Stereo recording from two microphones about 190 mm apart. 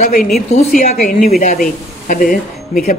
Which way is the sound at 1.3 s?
45° left (ahead or behind).